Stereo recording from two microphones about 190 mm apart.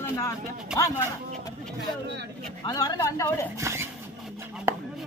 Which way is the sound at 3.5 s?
15° right (ahead or behind).